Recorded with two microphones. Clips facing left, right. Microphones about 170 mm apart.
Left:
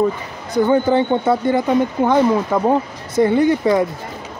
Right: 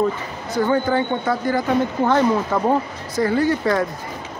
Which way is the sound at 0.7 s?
25° left (ahead or behind).